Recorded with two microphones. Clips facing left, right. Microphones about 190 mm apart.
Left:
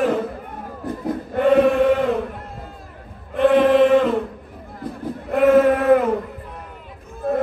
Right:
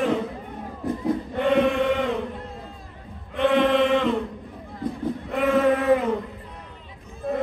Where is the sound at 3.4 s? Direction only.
Centre (ahead or behind).